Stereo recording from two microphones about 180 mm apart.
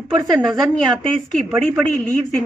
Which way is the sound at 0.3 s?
Centre (ahead or behind).